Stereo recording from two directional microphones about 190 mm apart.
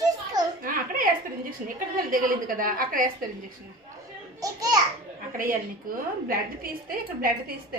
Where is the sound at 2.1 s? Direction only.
45° right (ahead or behind).